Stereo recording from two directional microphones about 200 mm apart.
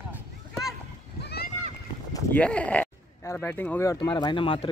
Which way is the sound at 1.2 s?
55° left (ahead or behind).